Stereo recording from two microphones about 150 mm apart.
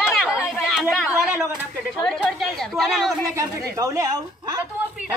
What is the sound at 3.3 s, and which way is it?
A woman's voice, 20° right (ahead or behind).